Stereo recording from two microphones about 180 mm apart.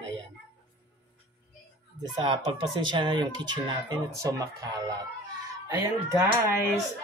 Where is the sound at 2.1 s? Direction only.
25° right (ahead or behind).